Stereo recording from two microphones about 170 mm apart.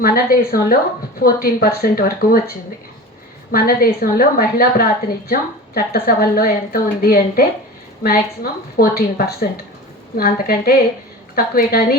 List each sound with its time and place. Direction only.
0.0 s a woman's voice: 60° left (ahead or behind)
8.7 s a woman's voice: 65° left (ahead or behind)